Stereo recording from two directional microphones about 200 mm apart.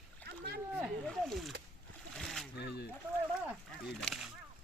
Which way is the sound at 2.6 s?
55° left (ahead or behind).